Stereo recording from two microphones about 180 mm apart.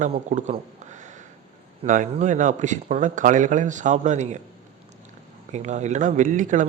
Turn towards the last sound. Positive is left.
turn(degrees=-45)  # may be behind; listen again after turning